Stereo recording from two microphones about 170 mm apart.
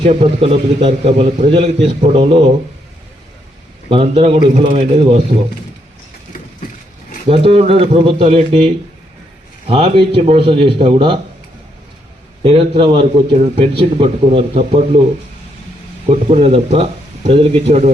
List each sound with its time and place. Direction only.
0.0 s a man's voice: 35° right (ahead or behind)
3.8 s a man's voice: 35° right (ahead or behind)
7.3 s a man's voice: 35° right (ahead or behind)
12.4 s a man's voice: 35° right (ahead or behind)
16.0 s a man's voice: 35° right (ahead or behind)